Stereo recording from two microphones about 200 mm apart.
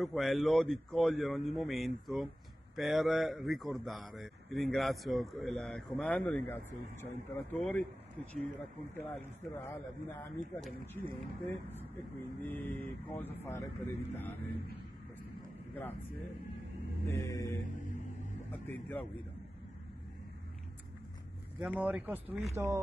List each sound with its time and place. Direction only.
0.0 s speech: centre (ahead or behind)
8.9 s speech: 10° left (ahead or behind)
17.1 s speech: 15° left (ahead or behind)
18.7 s speech: 10° left (ahead or behind)
21.5 s speech: 5° right (ahead or behind)